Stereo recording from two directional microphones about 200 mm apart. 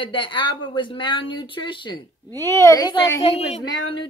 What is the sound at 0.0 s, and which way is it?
Speech, 25° left (ahead or behind).